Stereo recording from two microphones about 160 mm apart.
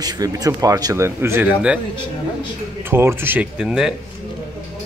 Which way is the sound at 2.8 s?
15° right (ahead or behind).